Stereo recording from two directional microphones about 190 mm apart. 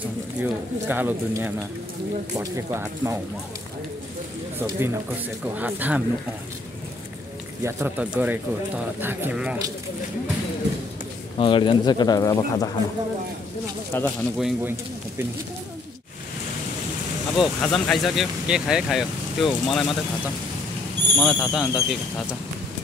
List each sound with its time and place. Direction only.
0.4 s speech: 10° right (ahead or behind)
4.6 s speech: 10° right (ahead or behind)
7.6 s speech: 10° right (ahead or behind)
11.3 s speech: 25° left (ahead or behind)
13.9 s speech: 10° left (ahead or behind)
14.4 s speech: 10° right (ahead or behind)
17.4 s speech: 5° left (ahead or behind)
21.2 s speech: centre (ahead or behind)